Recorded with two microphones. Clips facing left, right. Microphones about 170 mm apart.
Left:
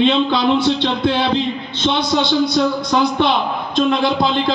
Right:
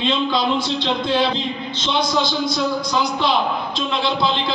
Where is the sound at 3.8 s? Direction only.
50° left (ahead or behind).